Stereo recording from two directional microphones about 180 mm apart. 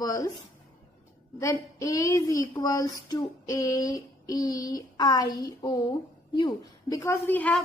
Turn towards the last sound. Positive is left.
turn(degrees=10)  # may be behind; listen again after turning